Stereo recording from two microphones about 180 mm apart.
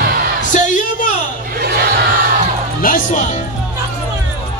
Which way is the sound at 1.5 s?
55° right (ahead or behind).